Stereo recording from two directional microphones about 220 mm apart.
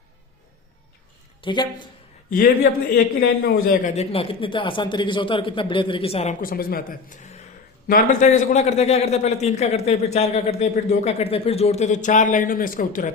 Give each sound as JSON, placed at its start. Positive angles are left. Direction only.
{"t": 1.4, "sound": "a man's voice", "side_deg": 20}
{"t": 2.9, "sound": "a man's voice", "side_deg": 40}
{"t": 6.4, "sound": "a man's voice", "side_deg": 40}